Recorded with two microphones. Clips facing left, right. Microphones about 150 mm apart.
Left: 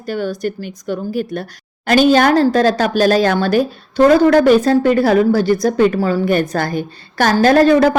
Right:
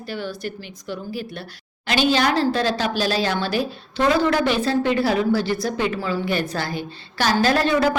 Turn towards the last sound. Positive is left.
turn(degrees=40)  # may be behind; listen again after turning